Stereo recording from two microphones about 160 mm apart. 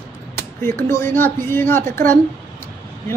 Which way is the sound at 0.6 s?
15° left (ahead or behind).